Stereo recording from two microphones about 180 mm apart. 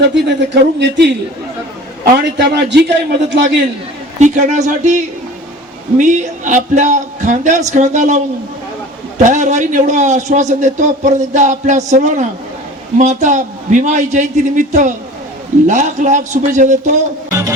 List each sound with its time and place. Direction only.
0.1 s a man's voice: 70° right (ahead or behind)
2.4 s a man's voice: 70° right (ahead or behind)
4.2 s a man's voice: 40° right (ahead or behind)